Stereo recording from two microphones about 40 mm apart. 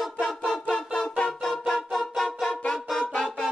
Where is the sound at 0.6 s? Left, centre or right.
Left.